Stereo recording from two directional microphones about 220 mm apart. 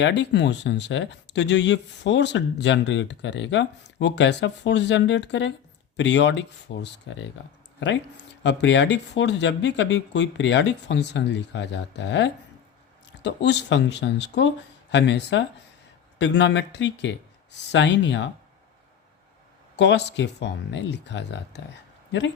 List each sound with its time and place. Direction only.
0.0 s speech: 55° left (ahead or behind)
8.4 s speech: 55° left (ahead or behind)
19.7 s speech: 50° left (ahead or behind)